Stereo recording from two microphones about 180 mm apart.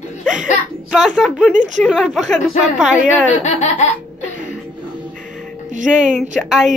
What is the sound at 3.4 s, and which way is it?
Laughter, 40° left (ahead or behind).